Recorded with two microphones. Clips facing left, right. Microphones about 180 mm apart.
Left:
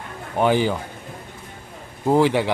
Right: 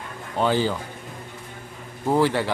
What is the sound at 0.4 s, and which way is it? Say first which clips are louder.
Speech: left 3 dB; 15° left (ahead or behind).